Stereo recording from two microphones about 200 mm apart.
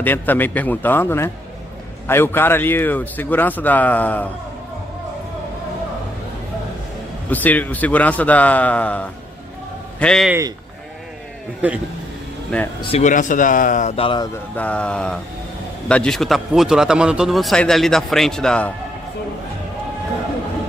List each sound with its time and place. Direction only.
0.0 s speech: 10° left (ahead or behind)
7.2 s a man's voice: 10° left (ahead or behind)
11.6 s speech: 5° right (ahead or behind)
12.5 s speech: 5° left (ahead or behind)
12.9 s speech: 40° left (ahead or behind); by 18.7 s 5° left (ahead or behind)